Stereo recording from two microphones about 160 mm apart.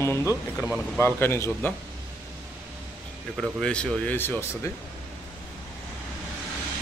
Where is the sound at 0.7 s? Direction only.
5° left (ahead or behind).